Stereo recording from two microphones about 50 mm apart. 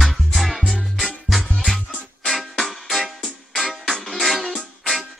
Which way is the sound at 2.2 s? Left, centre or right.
Centre.